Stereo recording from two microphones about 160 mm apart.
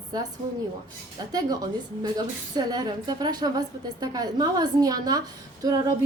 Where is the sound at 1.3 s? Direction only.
25° right (ahead or behind).